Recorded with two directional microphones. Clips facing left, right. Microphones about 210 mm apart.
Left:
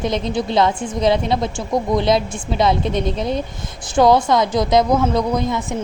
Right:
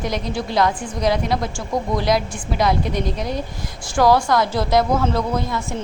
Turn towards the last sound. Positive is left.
turn(degrees=20)  # may be behind; listen again after turning